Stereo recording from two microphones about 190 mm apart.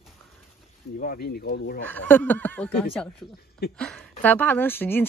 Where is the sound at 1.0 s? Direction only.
50° left (ahead or behind).